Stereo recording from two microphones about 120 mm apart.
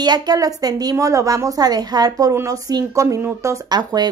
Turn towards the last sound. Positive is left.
turn(degrees=-35)  # may be behind; listen again after turning